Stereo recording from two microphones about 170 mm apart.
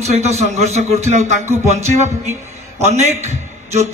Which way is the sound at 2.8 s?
40° right (ahead or behind).